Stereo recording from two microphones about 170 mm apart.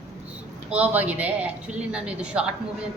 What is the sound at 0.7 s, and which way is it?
Speech, 10° right (ahead or behind).